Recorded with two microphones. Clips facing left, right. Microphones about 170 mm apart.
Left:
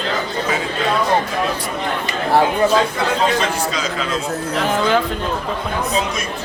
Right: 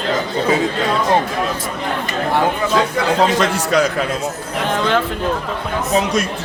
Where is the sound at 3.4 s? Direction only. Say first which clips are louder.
Right 5 dB; 65° right (ahead or behind).